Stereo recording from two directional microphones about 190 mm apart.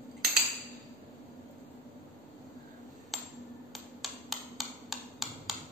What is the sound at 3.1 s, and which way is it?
Hammer, centre (ahead or behind).